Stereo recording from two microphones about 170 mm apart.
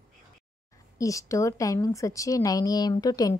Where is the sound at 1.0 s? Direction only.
20° left (ahead or behind).